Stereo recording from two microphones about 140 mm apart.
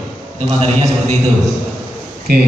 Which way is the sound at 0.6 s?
50° right (ahead or behind).